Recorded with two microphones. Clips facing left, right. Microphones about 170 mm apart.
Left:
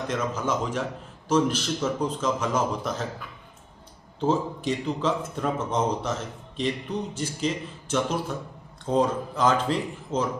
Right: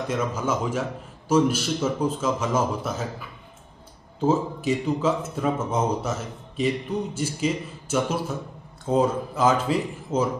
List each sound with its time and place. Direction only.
0.1 s a man's voice: 10° right (ahead or behind)